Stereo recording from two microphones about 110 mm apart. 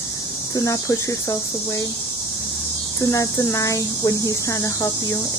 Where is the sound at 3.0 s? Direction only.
30° left (ahead or behind).